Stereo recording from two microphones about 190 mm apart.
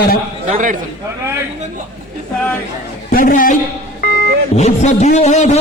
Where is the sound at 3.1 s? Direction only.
50° left (ahead or behind).